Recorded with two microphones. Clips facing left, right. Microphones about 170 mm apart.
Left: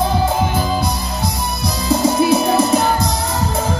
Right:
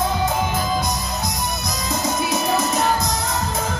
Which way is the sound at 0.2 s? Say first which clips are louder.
Left 4 dB; 30° left (ahead or behind).